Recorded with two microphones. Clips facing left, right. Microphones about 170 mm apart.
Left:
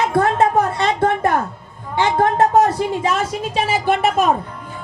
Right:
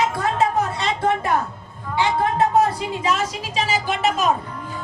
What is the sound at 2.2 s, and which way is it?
A woman's voice, 45° left (ahead or behind).